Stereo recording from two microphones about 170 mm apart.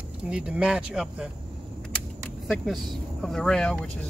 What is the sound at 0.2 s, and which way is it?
Speech, 5° right (ahead or behind).